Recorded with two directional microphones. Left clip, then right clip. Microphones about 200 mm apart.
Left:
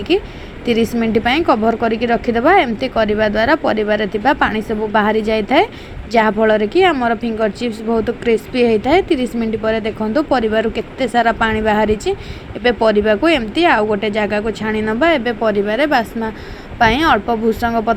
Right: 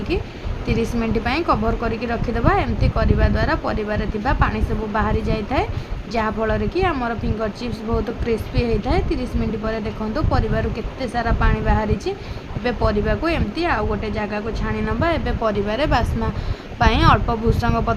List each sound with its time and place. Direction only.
0.1 s a woman's voice: 20° left (ahead or behind)